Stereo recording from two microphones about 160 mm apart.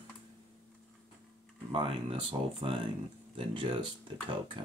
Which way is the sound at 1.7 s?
30° right (ahead or behind).